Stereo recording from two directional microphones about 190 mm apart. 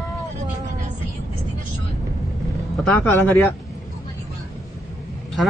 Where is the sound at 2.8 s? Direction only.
5° left (ahead or behind).